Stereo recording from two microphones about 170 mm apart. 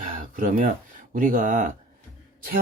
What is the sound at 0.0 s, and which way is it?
Speech, 50° right (ahead or behind).